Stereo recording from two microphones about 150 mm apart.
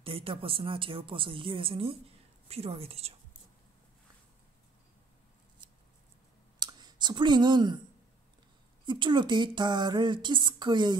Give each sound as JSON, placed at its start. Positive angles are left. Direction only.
{"t": 0.0, "sound": "speech", "side_deg": -40}
{"t": 6.6, "sound": "speech", "side_deg": -30}
{"t": 8.8, "sound": "speech", "side_deg": -30}